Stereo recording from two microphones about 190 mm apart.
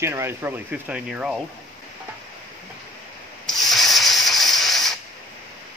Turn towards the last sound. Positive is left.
turn(degrees=0)  # may be behind; listen again after turning